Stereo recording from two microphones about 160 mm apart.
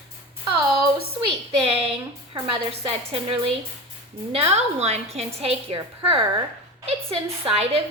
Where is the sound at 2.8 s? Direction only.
35° right (ahead or behind).